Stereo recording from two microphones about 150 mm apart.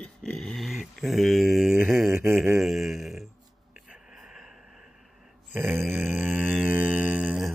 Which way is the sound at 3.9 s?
5° right (ahead or behind).